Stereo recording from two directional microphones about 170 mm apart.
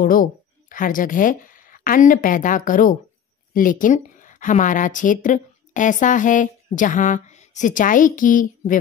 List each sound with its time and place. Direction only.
0.0 s a woman's voice: 55° left (ahead or behind)